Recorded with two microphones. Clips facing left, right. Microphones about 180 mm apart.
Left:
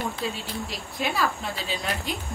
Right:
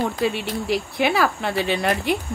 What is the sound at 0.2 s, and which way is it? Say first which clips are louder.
Speech: right 8 dB; 70° right (ahead or behind).